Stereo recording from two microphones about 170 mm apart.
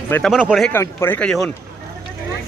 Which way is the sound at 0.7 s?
15° left (ahead or behind).